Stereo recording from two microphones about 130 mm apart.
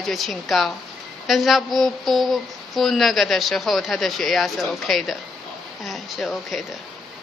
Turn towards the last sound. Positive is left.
turn(degrees=0)  # may be behind; listen again after turning